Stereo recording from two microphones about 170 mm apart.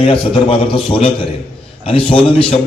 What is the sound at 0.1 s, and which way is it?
A man's voice, 30° left (ahead or behind).